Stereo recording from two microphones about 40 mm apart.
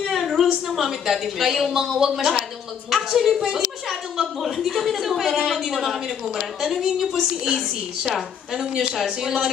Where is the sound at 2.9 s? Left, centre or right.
Centre.